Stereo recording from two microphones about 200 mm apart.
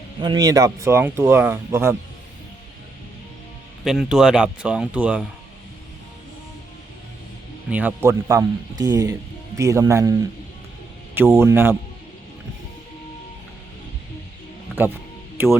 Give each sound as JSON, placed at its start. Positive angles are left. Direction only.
{"t": 0.2, "sound": "speech", "side_deg": -20}
{"t": 3.8, "sound": "speech", "side_deg": 0}
{"t": 7.7, "sound": "speech", "side_deg": -10}
{"t": 15.4, "sound": "speech", "side_deg": -10}